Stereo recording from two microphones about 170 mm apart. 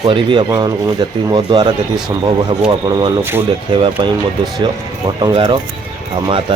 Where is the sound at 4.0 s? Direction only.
30° right (ahead or behind).